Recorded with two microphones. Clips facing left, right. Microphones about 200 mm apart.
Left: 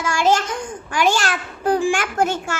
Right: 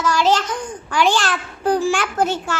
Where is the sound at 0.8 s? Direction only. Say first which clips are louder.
Right 1 dB; 45° left (ahead or behind).